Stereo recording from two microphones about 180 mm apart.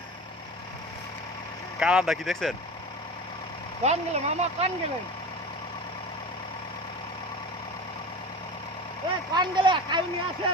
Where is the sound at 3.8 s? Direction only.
40° right (ahead or behind).